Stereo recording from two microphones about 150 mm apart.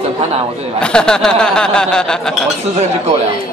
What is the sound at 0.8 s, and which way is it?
Speech, 5° left (ahead or behind).